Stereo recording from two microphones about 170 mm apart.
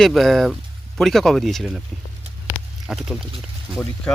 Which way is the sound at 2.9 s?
5° right (ahead or behind).